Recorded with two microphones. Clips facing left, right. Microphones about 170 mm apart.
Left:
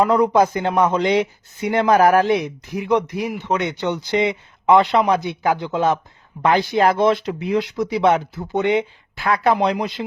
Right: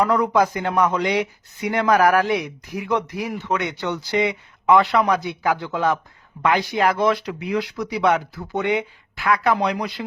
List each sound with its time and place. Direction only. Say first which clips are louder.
0.0 s speech: left 3 dB; 25° left (ahead or behind)